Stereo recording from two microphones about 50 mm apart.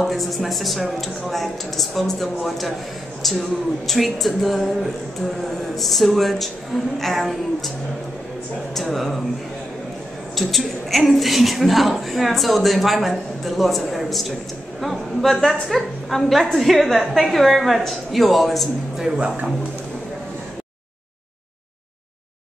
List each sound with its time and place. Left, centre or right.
0.0 s a woman's voice: centre
8.7 s a woman's voice: centre
10.3 s a woman's voice: centre
19.1 s speech: right